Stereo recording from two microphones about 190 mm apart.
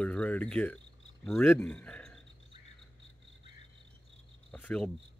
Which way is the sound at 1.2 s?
10° left (ahead or behind).